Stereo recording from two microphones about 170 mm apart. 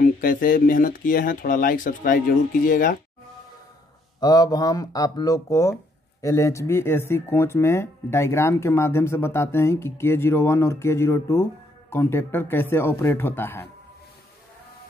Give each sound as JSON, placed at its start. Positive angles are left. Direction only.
{"t": 0.0, "sound": "speech", "side_deg": 55}
{"t": 4.2, "sound": "speech", "side_deg": 20}